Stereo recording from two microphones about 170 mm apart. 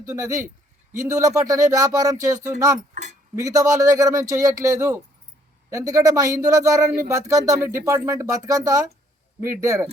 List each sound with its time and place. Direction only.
0.0 s speech: 20° right (ahead or behind)
2.9 s cutlery: 45° right (ahead or behind)
3.3 s speech: 20° right (ahead or behind)